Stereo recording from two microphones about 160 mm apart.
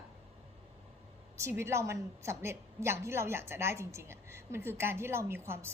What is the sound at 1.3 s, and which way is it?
A woman's voice, 15° right (ahead or behind).